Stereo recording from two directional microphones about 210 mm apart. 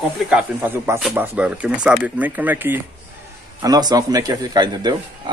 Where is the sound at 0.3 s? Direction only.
5° right (ahead or behind).